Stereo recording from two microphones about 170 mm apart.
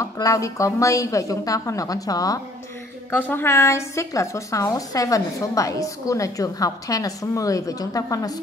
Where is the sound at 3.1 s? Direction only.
10° left (ahead or behind).